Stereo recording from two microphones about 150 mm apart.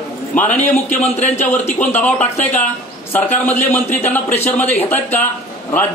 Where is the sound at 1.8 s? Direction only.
10° left (ahead or behind).